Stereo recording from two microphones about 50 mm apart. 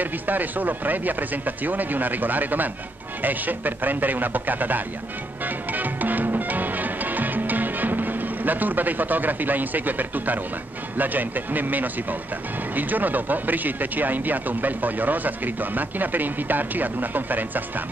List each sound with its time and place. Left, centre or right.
0.0 s speech: right
5.4 s music: right
11.0 s speech: right